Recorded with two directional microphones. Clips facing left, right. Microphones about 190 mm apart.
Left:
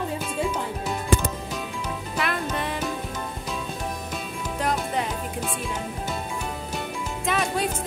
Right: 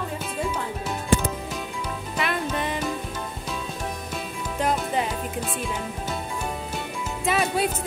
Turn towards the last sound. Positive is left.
turn(degrees=-5)  # may be behind; listen again after turning